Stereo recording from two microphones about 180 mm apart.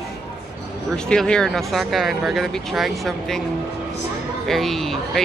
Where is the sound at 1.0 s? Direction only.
5° left (ahead or behind).